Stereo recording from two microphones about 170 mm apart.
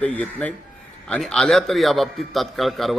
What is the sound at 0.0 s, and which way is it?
A man's voice, 10° left (ahead or behind).